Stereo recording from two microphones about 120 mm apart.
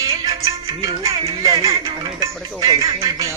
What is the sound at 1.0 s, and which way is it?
Music, 30° right (ahead or behind).